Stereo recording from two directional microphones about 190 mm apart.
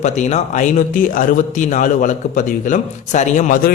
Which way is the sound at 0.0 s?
35° left (ahead or behind).